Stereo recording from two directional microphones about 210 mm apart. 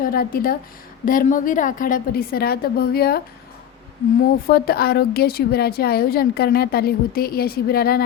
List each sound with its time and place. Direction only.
0.1 s a woman's voice: 45° left (ahead or behind)
4.4 s a woman's voice: 45° left (ahead or behind)